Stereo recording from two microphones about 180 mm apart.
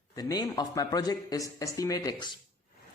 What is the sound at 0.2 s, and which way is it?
A man's voice, 20° left (ahead or behind).